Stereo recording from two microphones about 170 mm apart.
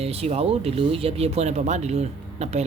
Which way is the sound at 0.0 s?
35° right (ahead or behind).